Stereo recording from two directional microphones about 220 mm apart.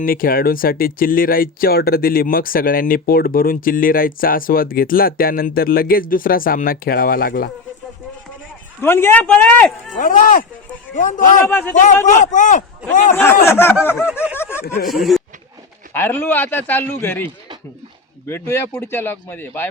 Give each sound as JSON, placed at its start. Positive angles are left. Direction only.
{"t": 0.0, "sound": "speech", "side_deg": 40}
{"t": 8.8, "sound": "a man's voice", "side_deg": 10}
{"t": 9.9, "sound": "speech", "side_deg": 35}
{"t": 11.4, "sound": "a man's voice", "side_deg": 10}
{"t": 11.7, "sound": "speech", "side_deg": 35}
{"t": 13.1, "sound": "a man's voice", "side_deg": 10}
{"t": 14.1, "sound": "snicker", "side_deg": -5}
{"t": 14.8, "sound": "a man's voice", "side_deg": 0}